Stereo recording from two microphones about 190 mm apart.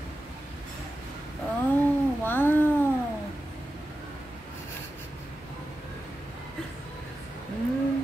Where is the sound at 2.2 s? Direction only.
10° left (ahead or behind).